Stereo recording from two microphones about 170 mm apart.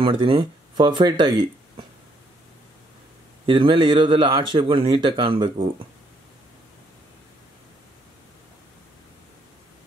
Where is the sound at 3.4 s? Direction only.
30° right (ahead or behind).